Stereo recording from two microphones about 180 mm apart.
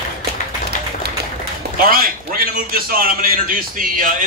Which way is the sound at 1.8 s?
55° right (ahead or behind).